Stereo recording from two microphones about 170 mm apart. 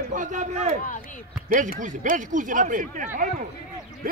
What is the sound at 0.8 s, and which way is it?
Speech, 50° left (ahead or behind).